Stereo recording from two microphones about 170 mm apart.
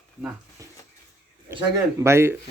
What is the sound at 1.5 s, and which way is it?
Speech, 20° right (ahead or behind).